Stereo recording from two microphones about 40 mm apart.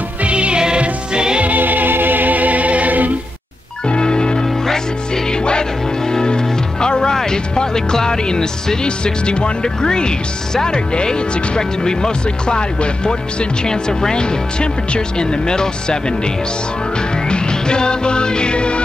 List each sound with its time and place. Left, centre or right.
0.2 s music: right
1.4 s music: right
3.8 s music: left
8.8 s speech: left
17.3 s music: left